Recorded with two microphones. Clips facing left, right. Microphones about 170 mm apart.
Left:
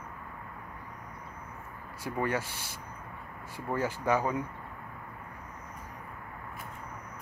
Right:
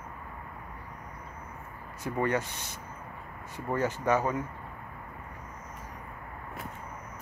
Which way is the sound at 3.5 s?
10° left (ahead or behind).